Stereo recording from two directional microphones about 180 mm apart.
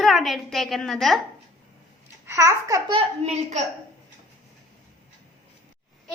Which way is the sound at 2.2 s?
15° right (ahead or behind).